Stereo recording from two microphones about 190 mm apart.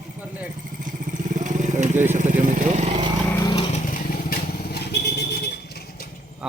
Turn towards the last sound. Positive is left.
turn(degrees=60)  # may be behind; listen again after turning